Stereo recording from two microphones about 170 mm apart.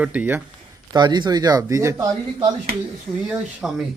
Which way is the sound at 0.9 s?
25° right (ahead or behind).